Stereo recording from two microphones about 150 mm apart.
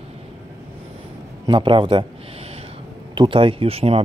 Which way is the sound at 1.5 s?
35° right (ahead or behind).